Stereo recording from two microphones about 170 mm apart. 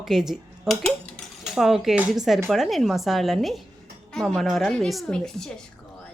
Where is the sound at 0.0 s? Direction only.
Centre (ahead or behind).